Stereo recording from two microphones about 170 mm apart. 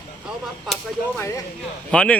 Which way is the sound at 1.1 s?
15° left (ahead or behind).